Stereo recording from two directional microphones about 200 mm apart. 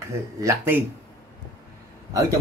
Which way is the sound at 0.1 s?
15° right (ahead or behind).